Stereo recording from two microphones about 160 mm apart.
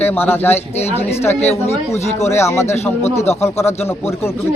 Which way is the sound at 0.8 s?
40° left (ahead or behind).